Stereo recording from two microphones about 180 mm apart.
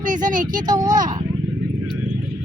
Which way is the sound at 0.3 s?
45° right (ahead or behind).